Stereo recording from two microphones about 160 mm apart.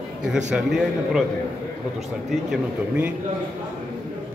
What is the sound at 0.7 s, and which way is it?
Speech, centre (ahead or behind).